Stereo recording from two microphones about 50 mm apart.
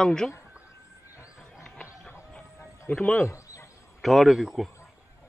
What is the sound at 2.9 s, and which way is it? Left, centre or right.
Speech, left.